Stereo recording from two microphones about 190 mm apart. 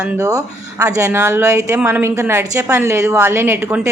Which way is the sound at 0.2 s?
20° right (ahead or behind).